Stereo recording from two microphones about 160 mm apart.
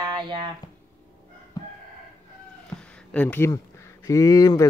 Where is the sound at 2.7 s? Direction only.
5° left (ahead or behind); by 4.6 s 20° left (ahead or behind).